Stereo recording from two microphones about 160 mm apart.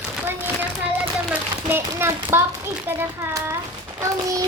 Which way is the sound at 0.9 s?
10° right (ahead or behind).